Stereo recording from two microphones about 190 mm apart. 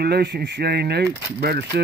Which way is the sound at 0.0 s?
55° right (ahead or behind).